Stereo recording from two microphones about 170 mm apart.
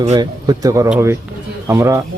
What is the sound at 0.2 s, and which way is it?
Speech, 20° right (ahead or behind).